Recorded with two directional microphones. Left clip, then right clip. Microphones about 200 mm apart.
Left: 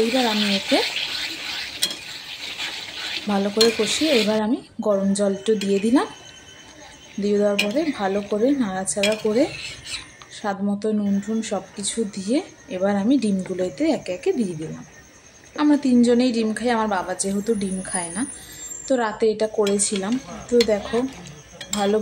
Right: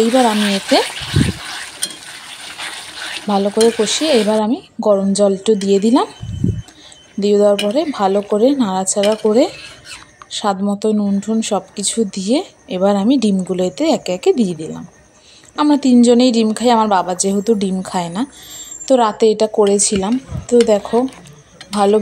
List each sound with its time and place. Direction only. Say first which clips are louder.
0.1 s speech: right 7 dB; 15° right (ahead or behind)
2.2 s frying: right 2 dB; 15° right (ahead or behind)
3.8 s speech: right 5 dB; 25° right (ahead or behind)
7.2 s speech: right 8 dB; 30° right (ahead or behind)
9.3 s speech: right 9 dB; 20° right (ahead or behind)
10.3 s speech: right 8 dB; 35° right (ahead or behind)
15.5 s speech: right 6 dB; 35° right (ahead or behind)